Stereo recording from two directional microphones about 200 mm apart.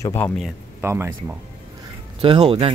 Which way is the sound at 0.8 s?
10° right (ahead or behind).